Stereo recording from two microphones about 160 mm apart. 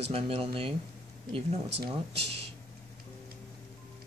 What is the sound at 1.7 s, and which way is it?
Speech, 90° right.